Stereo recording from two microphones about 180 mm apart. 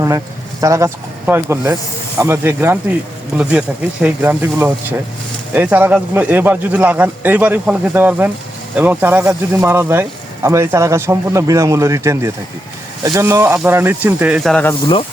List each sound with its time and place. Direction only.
0.6 s speech: 15° right (ahead or behind)
4.0 s speech: 10° right (ahead or behind); by 14.8 s 5° left (ahead or behind)